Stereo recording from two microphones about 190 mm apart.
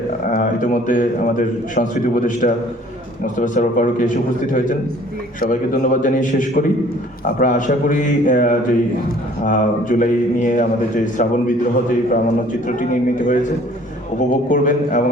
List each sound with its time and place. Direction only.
0.3 s speech: 45° left (ahead or behind)